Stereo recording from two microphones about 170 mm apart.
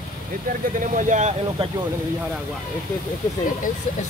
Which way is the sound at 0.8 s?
50° right (ahead or behind).